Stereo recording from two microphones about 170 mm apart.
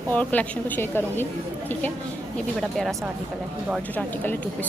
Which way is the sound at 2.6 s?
Centre (ahead or behind).